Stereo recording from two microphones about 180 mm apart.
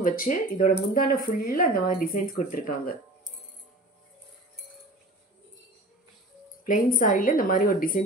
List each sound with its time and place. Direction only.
0.0 s speech: 50° left (ahead or behind)
6.6 s speech: 50° left (ahead or behind)